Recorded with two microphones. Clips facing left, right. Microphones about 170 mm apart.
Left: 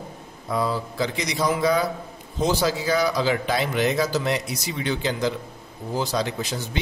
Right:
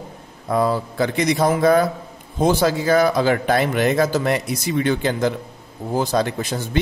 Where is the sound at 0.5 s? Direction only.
55° right (ahead or behind).